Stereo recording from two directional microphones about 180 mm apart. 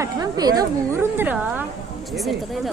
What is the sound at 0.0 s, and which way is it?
A woman's voice, 20° right (ahead or behind).